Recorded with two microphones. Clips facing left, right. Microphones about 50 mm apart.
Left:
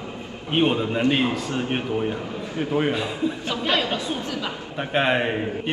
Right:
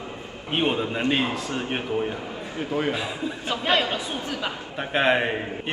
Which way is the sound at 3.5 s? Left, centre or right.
Right.